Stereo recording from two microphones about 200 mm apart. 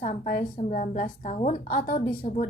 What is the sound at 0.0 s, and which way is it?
A woman's voice, 40° left (ahead or behind).